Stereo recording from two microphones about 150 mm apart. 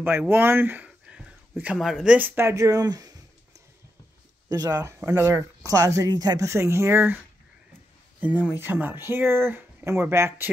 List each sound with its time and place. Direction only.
0.3 s speech: 15° right (ahead or behind)
4.5 s speech: 25° right (ahead or behind)
8.2 s speech: 10° right (ahead or behind)